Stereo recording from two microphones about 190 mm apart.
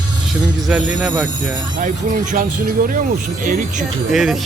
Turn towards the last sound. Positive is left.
turn(degrees=0)  # may be behind; listen again after turning